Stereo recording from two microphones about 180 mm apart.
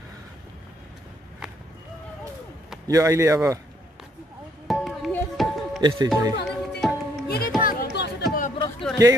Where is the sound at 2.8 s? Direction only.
15° right (ahead or behind).